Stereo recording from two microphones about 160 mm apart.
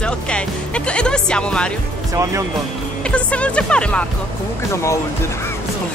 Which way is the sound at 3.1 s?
10° left (ahead or behind).